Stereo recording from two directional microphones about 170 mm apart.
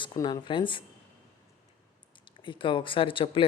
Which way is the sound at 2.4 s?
30° left (ahead or behind).